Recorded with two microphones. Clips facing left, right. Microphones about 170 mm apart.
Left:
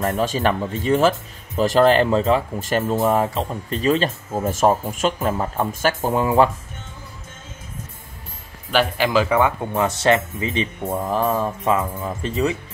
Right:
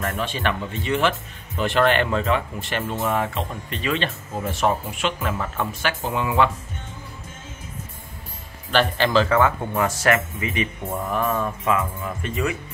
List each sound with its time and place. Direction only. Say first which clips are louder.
0.0 s speech: left 5 dB; 40° left (ahead or behind)
8.7 s speech: left 1 dB; 10° left (ahead or behind); by 12.5 s 30° left (ahead or behind)